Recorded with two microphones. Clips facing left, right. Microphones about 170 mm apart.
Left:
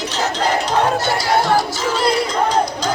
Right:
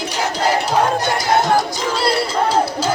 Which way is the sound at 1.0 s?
20° right (ahead or behind).